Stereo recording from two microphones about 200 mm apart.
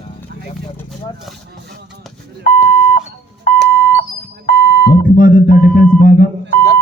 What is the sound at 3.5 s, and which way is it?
Alarm clock, 45° left (ahead or behind).